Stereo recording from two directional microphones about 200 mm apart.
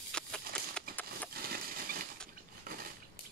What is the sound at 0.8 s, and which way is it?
Horse, 5° left (ahead or behind).